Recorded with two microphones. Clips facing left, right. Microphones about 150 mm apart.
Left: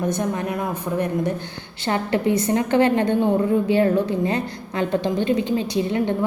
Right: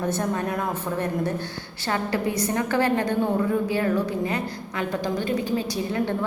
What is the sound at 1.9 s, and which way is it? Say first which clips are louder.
A woman's voice: left 5 dB; 25° left (ahead or behind).